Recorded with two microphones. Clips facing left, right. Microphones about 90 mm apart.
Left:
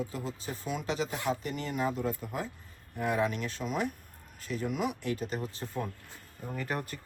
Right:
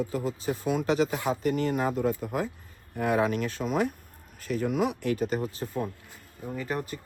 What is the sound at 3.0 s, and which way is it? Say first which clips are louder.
Speech: right 4 dB; 80° right.